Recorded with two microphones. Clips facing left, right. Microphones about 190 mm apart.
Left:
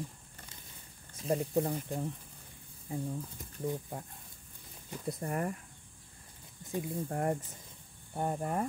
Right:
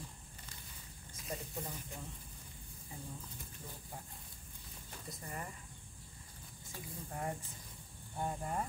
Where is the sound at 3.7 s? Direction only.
60° left (ahead or behind).